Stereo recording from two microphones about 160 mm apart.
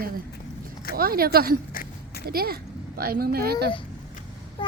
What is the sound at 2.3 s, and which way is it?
Speech, 70° right (ahead or behind).